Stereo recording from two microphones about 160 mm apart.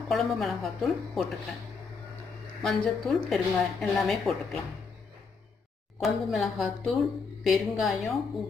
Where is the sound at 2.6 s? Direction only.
Centre (ahead or behind).